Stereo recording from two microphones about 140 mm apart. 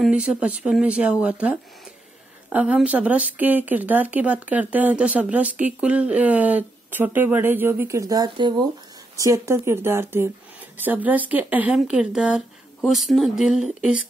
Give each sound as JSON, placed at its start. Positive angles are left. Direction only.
{"t": 0.0, "sound": "speech", "side_deg": -5}